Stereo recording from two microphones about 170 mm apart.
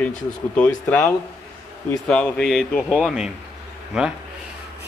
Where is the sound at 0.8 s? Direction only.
10° left (ahead or behind).